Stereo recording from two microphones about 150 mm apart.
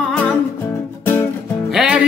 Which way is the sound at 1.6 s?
5° right (ahead or behind).